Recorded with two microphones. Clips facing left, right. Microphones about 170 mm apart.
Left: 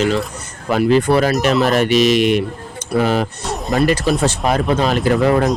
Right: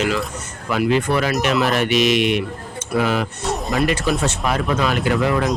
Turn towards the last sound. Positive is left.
turn(degrees=40)  # may be behind; listen again after turning